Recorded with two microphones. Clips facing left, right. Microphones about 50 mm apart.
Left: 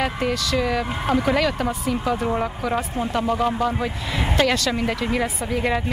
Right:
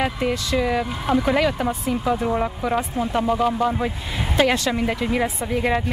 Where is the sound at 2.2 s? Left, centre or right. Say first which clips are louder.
Right 1 dB; centre.